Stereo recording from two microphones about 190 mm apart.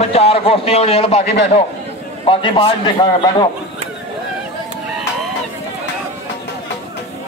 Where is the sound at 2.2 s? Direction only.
25° left (ahead or behind).